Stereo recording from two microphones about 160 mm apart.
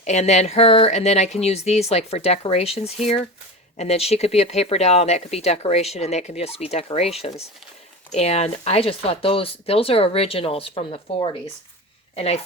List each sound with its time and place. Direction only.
0.0 s a woman's voice: 45° left (ahead or behind)